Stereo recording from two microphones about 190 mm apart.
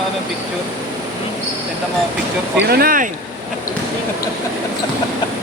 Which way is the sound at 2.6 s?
50° right (ahead or behind).